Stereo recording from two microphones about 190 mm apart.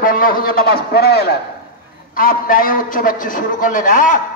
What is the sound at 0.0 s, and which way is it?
A man's voice, 50° left (ahead or behind).